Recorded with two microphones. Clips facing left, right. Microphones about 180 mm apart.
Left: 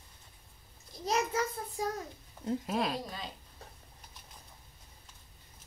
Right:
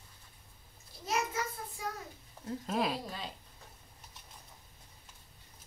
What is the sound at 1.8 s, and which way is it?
Speech, 40° left (ahead or behind).